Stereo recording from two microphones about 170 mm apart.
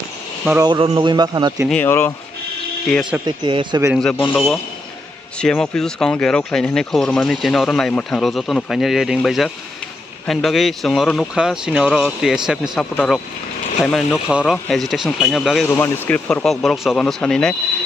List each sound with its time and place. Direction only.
0.6 s a man's voice: 25° right (ahead or behind)
1.7 s a man's voice: 10° left (ahead or behind)
2.9 s speech: centre (ahead or behind)
3.3 s a man's voice: 25° right (ahead or behind)
4.0 s a man's voice: 10° left (ahead or behind)
15.7 s speech: 10° left (ahead or behind)